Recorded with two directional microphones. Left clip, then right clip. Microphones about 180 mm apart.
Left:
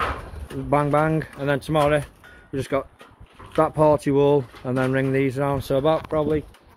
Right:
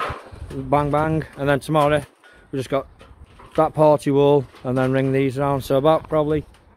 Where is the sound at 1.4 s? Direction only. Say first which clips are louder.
Right 5 dB; 65° right (ahead or behind).